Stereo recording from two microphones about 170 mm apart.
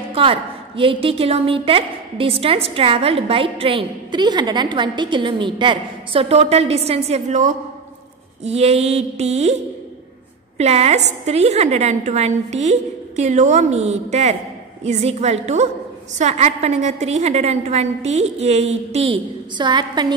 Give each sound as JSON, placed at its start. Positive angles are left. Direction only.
{"t": 0.1, "sound": "a woman's voice", "side_deg": -35}
{"t": 10.6, "sound": "a woman's voice", "side_deg": -40}
{"t": 19.6, "sound": "a woman's voice", "side_deg": -25}